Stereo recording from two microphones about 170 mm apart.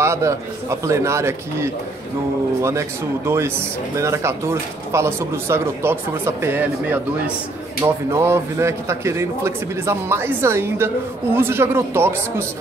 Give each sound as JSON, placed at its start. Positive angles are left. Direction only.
{"t": 0.0, "sound": "speech", "side_deg": -15}
{"t": 3.3, "sound": "speech", "side_deg": -15}